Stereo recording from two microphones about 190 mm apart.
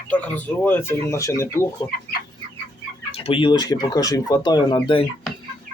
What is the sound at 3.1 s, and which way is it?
Speech, 30° left (ahead or behind).